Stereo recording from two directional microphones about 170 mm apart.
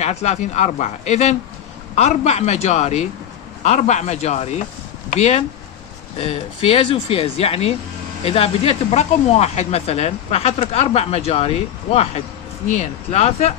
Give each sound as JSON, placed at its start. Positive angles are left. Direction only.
{"t": 0.0, "sound": "speech", "side_deg": 40}